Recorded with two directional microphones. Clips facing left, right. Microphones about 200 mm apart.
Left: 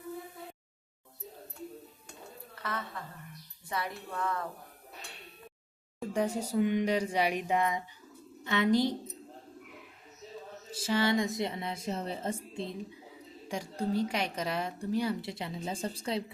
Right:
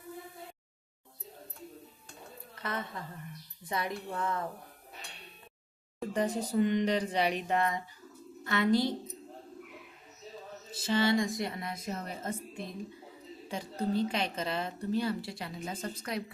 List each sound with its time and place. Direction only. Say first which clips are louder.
3.7 s speech: right 2 dB; 20° right (ahead or behind)
6.0 s a woman's voice: even; 10° left (ahead or behind)
10.7 s speech: right 1 dB; 10° left (ahead or behind); by 12.7 s 25° left (ahead or behind)
13.5 s a woman's voice: even; 10° left (ahead or behind); by 16.2 s 30° left (ahead or behind)